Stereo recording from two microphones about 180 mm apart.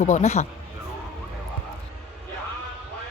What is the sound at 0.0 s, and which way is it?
Speech, 40° left (ahead or behind).